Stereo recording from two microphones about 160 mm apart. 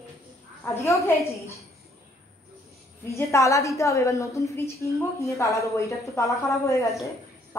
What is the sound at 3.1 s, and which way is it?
A woman's voice, 20° left (ahead or behind).